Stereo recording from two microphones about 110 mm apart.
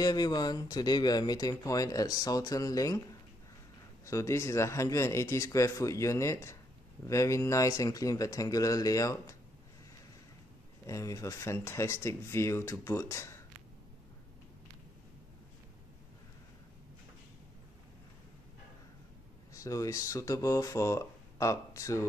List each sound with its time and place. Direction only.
0.0 s speech: 35° left (ahead or behind)
4.0 s speech: 25° left (ahead or behind)
10.9 s speech: 30° left (ahead or behind)
19.5 s speech: 30° left (ahead or behind)